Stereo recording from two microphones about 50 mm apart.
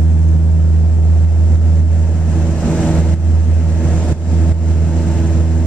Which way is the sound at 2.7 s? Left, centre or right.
Centre.